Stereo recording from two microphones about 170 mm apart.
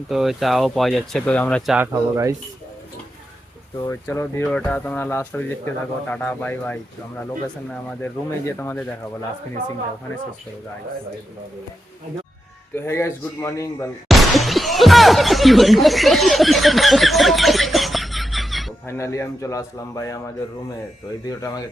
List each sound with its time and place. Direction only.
0.1 s speech: centre (ahead or behind)
1.9 s speech: 20° right (ahead or behind)
3.8 s speech: 15° left (ahead or behind)
8.0 s speech: 15° left (ahead or behind)
12.7 s speech: 15° left (ahead or behind)
14.1 s a sound: centre (ahead or behind)
18.9 s speech: 15° left (ahead or behind)
21.2 s speech: 20° left (ahead or behind)